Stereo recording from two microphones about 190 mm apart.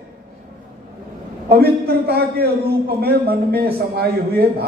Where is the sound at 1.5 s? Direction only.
55° right (ahead or behind).